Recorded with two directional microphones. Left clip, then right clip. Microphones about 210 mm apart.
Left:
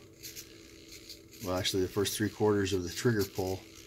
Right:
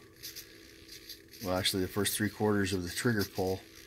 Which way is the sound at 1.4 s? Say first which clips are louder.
Even; 20° right (ahead or behind).